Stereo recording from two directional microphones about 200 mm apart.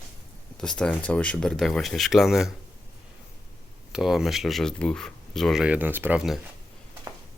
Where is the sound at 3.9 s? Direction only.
Centre (ahead or behind).